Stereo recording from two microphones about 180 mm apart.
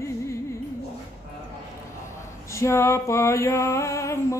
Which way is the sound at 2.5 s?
15° left (ahead or behind).